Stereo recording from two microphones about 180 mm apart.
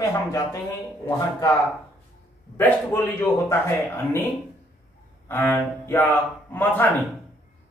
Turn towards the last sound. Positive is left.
turn(degrees=10)  # may be behind; listen again after turning